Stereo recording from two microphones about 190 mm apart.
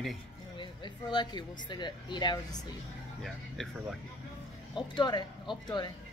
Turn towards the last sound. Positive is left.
turn(degrees=25)  # may be behind; listen again after turning